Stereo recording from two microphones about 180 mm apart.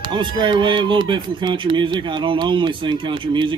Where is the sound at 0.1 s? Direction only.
25° right (ahead or behind).